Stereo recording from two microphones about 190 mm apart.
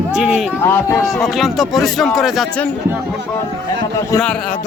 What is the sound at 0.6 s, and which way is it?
Speech, 10° left (ahead or behind).